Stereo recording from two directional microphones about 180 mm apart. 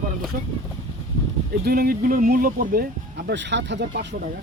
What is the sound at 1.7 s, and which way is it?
Speech, 55° right (ahead or behind).